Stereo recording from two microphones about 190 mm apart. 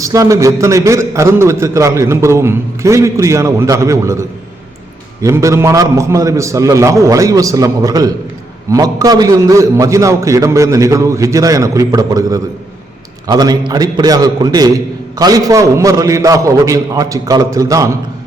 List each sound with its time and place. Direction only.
0.0 s a man's voice: 15° right (ahead or behind)